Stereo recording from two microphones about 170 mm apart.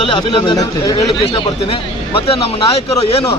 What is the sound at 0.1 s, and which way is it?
Speech, 25° left (ahead or behind).